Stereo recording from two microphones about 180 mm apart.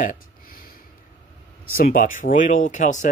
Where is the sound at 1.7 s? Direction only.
50° left (ahead or behind).